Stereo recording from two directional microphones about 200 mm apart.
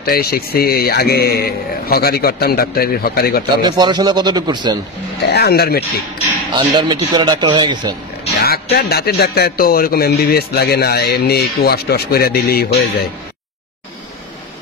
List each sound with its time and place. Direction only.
0.0 s a man's voice: 50° left (ahead or behind)
3.6 s speech: 20° right (ahead or behind)
5.3 s a man's voice: 50° left (ahead or behind)
6.7 s speech: 25° right (ahead or behind)
8.7 s a man's voice: 50° left (ahead or behind)